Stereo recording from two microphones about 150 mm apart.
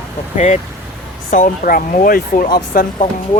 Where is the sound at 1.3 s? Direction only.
65° left (ahead or behind).